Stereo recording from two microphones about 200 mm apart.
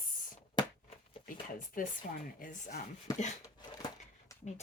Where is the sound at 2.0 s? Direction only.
45° left (ahead or behind).